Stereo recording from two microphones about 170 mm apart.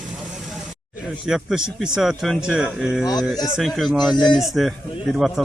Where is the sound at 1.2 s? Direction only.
5° right (ahead or behind).